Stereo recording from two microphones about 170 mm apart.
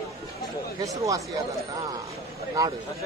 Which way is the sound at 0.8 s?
20° right (ahead or behind).